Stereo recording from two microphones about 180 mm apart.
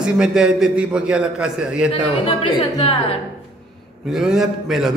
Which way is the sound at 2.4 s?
35° left (ahead or behind).